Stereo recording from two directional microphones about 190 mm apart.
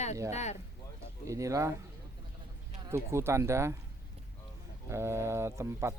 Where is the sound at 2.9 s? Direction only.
15° right (ahead or behind).